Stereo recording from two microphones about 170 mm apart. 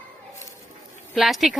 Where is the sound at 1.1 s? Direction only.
Centre (ahead or behind).